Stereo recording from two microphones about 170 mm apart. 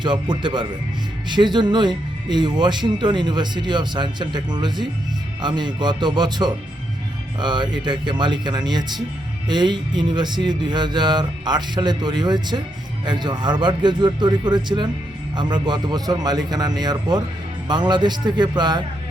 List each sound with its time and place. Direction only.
0.0 s speech: 25° right (ahead or behind)